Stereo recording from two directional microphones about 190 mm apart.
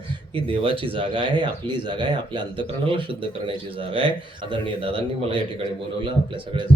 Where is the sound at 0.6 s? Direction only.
30° right (ahead or behind).